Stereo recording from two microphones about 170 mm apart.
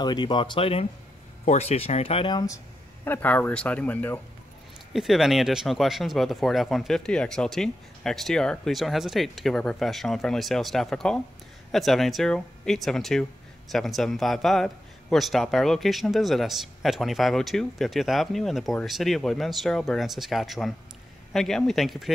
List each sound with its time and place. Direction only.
0.0 s speech: 25° left (ahead or behind)
3.1 s speech: 10° left (ahead or behind)
4.9 s a man's voice: centre (ahead or behind)